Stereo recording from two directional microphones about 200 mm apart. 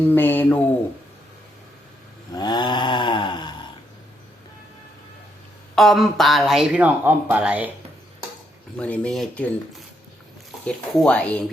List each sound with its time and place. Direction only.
0.0 s speech: 10° left (ahead or behind)
2.3 s a sound: 20° left (ahead or behind)
5.7 s speech: centre (ahead or behind)
8.8 s speech: 5° left (ahead or behind)
10.7 s speech: 5° left (ahead or behind)